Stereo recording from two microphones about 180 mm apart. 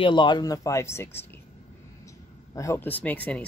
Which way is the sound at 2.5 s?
15° left (ahead or behind).